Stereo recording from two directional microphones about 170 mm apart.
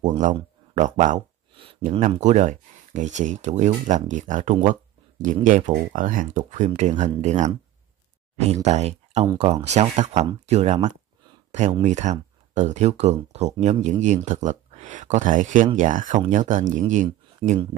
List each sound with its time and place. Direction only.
0.0 s speech: 45° right (ahead or behind)
1.5 s a sound: 30° right (ahead or behind)
1.9 s speech: 45° right (ahead or behind)
8.6 s speech: 40° right (ahead or behind)